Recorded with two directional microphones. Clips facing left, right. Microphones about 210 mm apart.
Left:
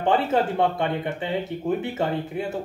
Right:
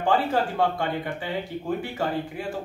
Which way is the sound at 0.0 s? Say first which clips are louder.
Left 2 dB; 25° left (ahead or behind).